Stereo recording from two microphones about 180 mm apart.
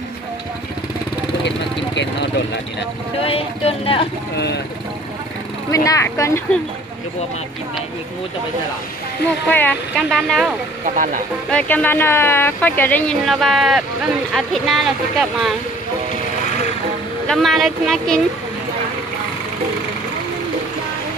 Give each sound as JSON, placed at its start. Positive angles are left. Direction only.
{"t": 3.3, "sound": "speech", "side_deg": 30}
{"t": 5.7, "sound": "speech", "side_deg": 20}
{"t": 9.5, "sound": "speech", "side_deg": 10}
{"t": 11.5, "sound": "speech", "side_deg": 10}
{"t": 17.3, "sound": "speech", "side_deg": 0}